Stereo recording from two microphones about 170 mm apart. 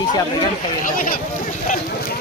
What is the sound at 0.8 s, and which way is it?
Speech, 55° left (ahead or behind).